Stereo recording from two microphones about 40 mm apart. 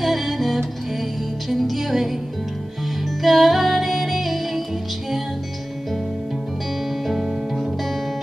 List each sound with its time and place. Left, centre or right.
0.0 s music: centre
3.2 s music: centre
7.1 s music: centre